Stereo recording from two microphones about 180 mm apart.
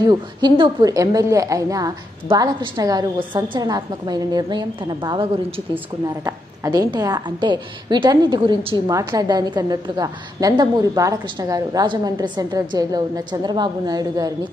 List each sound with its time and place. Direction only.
0.0 s a woman's voice: 25° right (ahead or behind)